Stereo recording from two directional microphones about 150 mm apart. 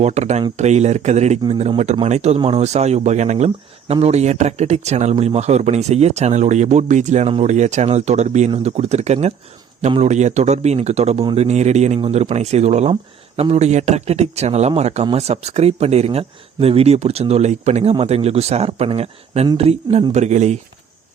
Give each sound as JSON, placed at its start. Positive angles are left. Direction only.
{"t": 0.0, "sound": "speech", "side_deg": -50}
{"t": 8.4, "sound": "speech", "side_deg": -40}